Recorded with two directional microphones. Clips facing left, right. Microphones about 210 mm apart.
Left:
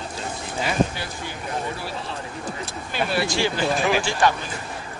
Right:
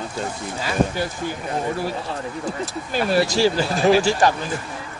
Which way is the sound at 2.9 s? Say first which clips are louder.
Right 5 dB; 40° right (ahead or behind).